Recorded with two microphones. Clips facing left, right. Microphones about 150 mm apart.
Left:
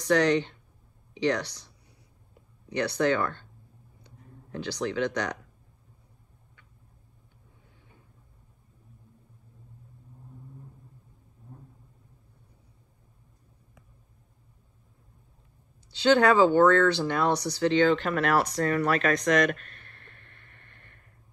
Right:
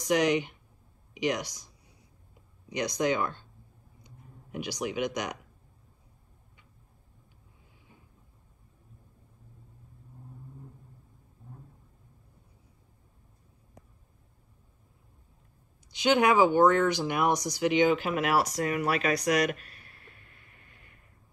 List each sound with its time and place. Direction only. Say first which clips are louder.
0.0 s speech: left 2 dB; 15° right (ahead or behind)
2.7 s speech: left 3 dB; 15° right (ahead or behind)
4.0 s a sound: left 2 dB; 15° right (ahead or behind)
15.9 s speech: left 3 dB; 15° right (ahead or behind)
19.0 s speech: left 2 dB; 45° left (ahead or behind)
19.5 s a sound: left 2 dB; 5° right (ahead or behind)